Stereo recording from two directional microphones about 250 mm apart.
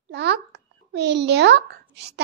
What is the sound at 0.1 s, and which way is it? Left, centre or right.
A child's voice, right.